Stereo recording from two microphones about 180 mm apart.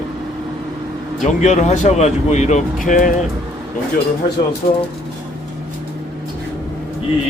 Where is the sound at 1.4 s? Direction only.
40° left (ahead or behind).